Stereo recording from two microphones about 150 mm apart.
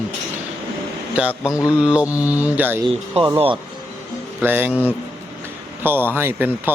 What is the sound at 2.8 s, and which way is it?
Speech, 35° right (ahead or behind).